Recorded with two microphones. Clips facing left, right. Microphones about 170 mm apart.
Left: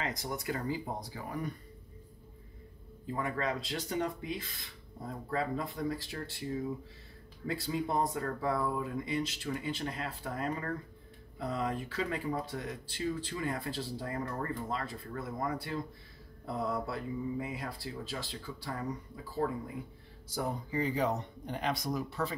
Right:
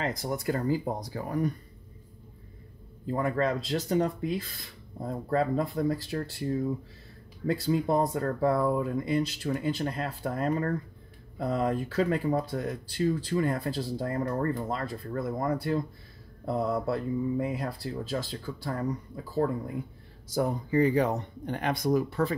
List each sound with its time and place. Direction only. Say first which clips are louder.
0.0 s speech: right 6 dB; 35° right (ahead or behind)
3.1 s speech: right 7 dB; 40° right (ahead or behind)
20.3 s speech: right 8 dB; 55° right (ahead or behind)